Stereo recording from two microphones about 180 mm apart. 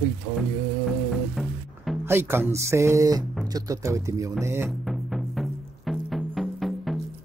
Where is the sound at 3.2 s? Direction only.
Centre (ahead or behind).